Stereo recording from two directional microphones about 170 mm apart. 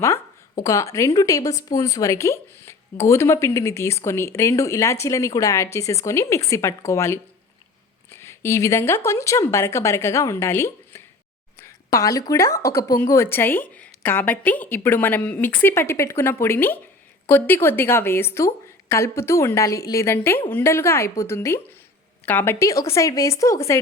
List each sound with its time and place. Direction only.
0.0 s speech: 20° left (ahead or behind)